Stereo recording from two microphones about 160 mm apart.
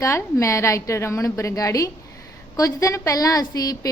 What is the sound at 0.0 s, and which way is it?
A woman's voice, 20° left (ahead or behind).